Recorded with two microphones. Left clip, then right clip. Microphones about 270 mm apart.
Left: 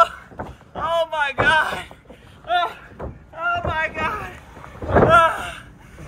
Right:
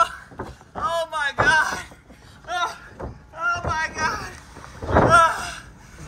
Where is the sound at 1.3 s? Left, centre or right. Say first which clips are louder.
Right 1 dB; centre.